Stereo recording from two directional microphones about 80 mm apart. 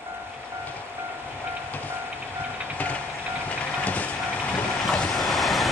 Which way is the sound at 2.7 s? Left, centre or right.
Centre.